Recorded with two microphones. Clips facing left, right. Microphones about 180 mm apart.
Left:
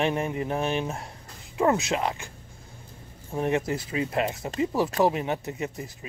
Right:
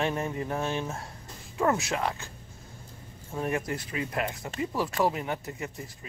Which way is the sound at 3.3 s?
20° left (ahead or behind).